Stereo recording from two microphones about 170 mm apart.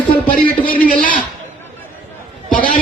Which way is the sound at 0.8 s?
55° left (ahead or behind).